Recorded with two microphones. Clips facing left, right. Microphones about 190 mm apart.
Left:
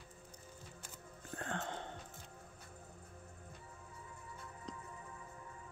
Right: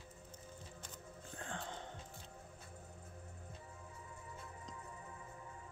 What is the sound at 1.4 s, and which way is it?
Music, 65° left (ahead or behind).